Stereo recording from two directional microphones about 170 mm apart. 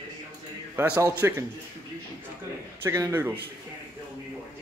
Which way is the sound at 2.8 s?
15° right (ahead or behind).